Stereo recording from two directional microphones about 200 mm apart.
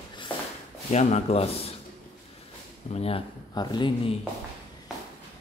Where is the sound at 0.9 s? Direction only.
30° left (ahead or behind).